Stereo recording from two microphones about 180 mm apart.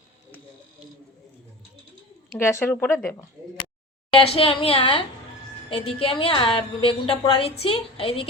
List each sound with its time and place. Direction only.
2.4 s speech: 15° left (ahead or behind)
4.1 s a woman's voice: 30° left (ahead or behind)